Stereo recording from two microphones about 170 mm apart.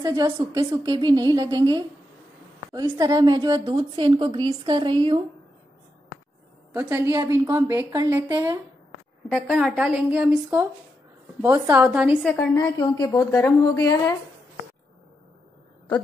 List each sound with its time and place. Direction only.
0.0 s a woman's voice: 20° right (ahead or behind)
6.7 s a woman's voice: 15° right (ahead or behind)
9.5 s a woman's voice: 5° right (ahead or behind)
13.0 s a woman's voice: 20° left (ahead or behind)